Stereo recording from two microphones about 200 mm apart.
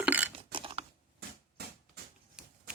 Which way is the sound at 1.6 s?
50° right (ahead or behind).